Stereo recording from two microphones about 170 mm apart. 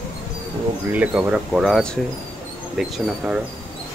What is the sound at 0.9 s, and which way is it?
Speech, 10° right (ahead or behind).